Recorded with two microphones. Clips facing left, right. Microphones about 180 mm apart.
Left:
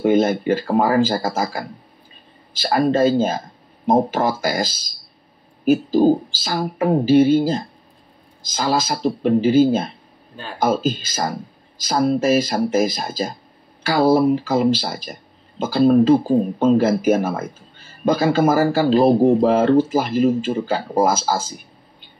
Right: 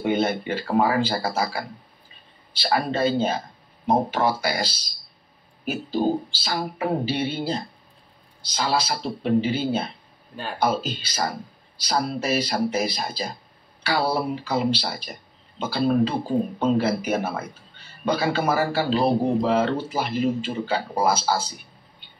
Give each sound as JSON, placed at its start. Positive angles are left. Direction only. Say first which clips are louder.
{"t": 0.0, "sound": "speech", "louder": "left 7 dB", "side_deg": 45}